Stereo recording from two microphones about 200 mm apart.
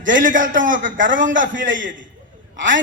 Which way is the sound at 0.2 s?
40° right (ahead or behind).